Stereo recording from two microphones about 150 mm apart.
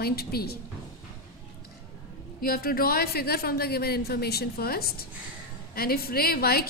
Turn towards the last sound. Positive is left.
turn(degrees=90)